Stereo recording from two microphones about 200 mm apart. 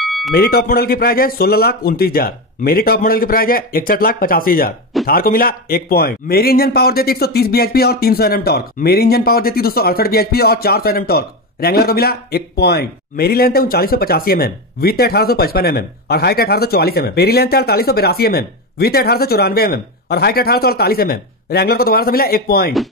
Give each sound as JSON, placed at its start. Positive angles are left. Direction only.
{"t": 0.0, "sound": "music", "side_deg": 0}
{"t": 0.3, "sound": "a man's voice", "side_deg": 50}